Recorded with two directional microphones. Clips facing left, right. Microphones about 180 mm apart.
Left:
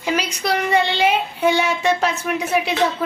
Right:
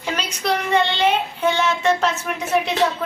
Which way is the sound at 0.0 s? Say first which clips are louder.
Left 3 dB; 10° left (ahead or behind).